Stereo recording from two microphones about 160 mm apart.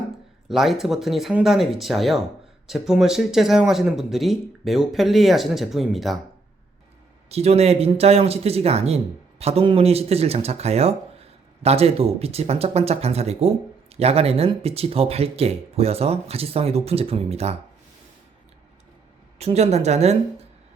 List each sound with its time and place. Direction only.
0.4 s speech: centre (ahead or behind)
7.3 s speech: 40° right (ahead or behind)
19.4 s a woman's voice: 40° right (ahead or behind)